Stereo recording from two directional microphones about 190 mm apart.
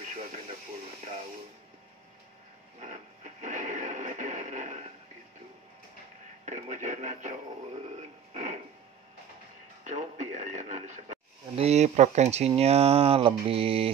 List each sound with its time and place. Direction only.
2.8 s radio: 40° right (ahead or behind)
6.4 s speech: 40° right (ahead or behind)
8.3 s a sound: 35° right (ahead or behind)
9.8 s radio: 40° right (ahead or behind)